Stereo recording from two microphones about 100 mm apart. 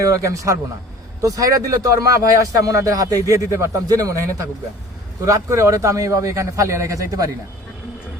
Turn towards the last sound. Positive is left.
turn(degrees=-35)  # may be behind; listen again after turning